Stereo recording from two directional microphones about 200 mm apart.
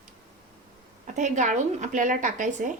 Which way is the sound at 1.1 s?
35° right (ahead or behind).